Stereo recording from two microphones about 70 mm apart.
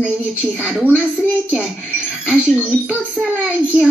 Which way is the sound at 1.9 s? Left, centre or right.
Centre.